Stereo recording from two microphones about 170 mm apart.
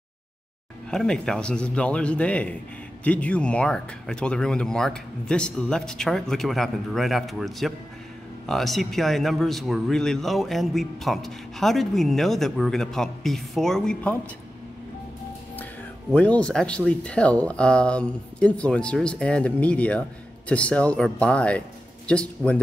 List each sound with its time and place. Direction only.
0.8 s speech: 5° left (ahead or behind)
16.2 s speech: 5° left (ahead or behind)